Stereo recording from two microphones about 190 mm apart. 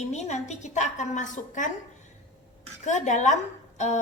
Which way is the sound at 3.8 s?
40° left (ahead or behind).